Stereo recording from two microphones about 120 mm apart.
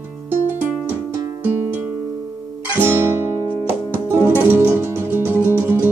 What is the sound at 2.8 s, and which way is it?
Guitar, 20° right (ahead or behind).